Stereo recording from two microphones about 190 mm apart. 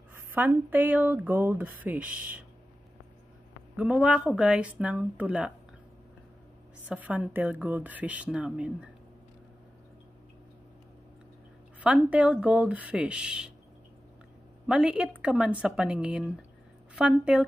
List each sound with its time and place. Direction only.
0.1 s speech: 10° right (ahead or behind)
3.7 s speech: 5° right (ahead or behind)
6.9 s speech: 5° right (ahead or behind)
11.8 s speech: 5° right (ahead or behind)
14.7 s a woman's voice: 5° right (ahead or behind)